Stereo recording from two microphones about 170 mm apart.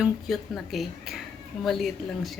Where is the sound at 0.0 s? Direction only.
Centre (ahead or behind).